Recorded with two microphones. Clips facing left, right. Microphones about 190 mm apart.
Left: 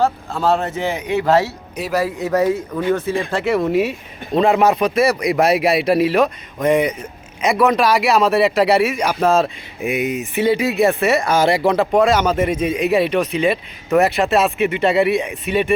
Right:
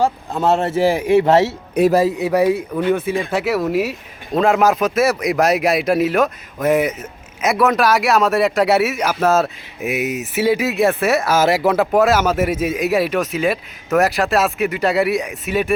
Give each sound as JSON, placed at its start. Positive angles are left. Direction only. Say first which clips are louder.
{"t": 0.0, "sound": "a man's voice", "louder": "even", "side_deg": -20}
{"t": 1.8, "sound": "a man's voice", "louder": "right 13 dB", "side_deg": -55}
{"t": 2.1, "sound": "a man's voice", "louder": "right 1 dB", "side_deg": -10}